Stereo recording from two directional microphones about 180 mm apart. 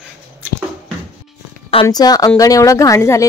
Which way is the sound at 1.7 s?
25° left (ahead or behind).